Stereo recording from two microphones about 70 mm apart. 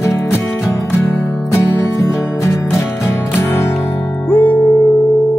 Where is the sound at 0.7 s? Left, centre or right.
Left.